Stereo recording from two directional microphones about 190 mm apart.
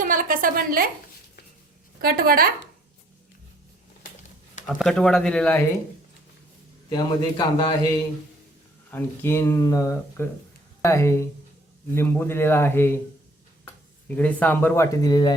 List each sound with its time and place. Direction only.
0.0 s a sound: 45° right (ahead or behind)
2.0 s a woman's voice: 50° right (ahead or behind)
4.6 s speech: centre (ahead or behind)
6.9 s a man's voice: 20° left (ahead or behind)
8.9 s speech: 10° left (ahead or behind)
14.2 s speech: 10° left (ahead or behind)